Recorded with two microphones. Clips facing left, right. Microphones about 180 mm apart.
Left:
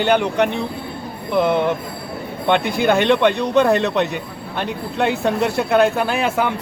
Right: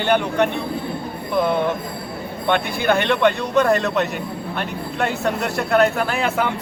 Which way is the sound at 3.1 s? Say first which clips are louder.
Left 2 dB; 20° left (ahead or behind).